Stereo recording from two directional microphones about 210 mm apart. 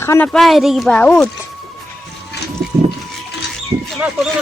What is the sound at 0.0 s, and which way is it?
Speech, 10° left (ahead or behind).